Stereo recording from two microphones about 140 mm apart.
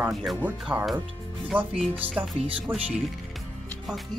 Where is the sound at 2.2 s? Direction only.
40° right (ahead or behind).